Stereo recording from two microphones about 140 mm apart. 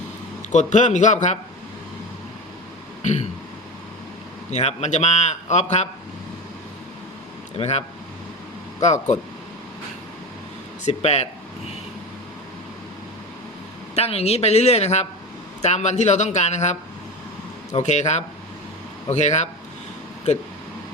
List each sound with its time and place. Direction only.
0.5 s a man's voice: 60° left (ahead or behind)
3.0 s throat clearing: 55° left (ahead or behind)
4.5 s a man's voice: 50° left (ahead or behind)
7.5 s a man's voice: 45° left (ahead or behind)
10.8 s a man's voice: 50° left (ahead or behind)
13.9 s a man's voice: 45° left (ahead or behind)
17.7 s a man's voice: 55° left (ahead or behind)